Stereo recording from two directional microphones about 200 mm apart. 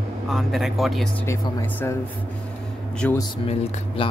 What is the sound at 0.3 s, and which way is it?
Speech, centre (ahead or behind).